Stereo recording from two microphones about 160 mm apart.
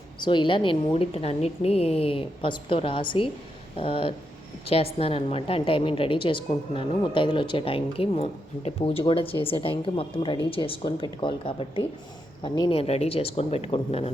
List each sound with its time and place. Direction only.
0.2 s a woman's voice: 30° left (ahead or behind)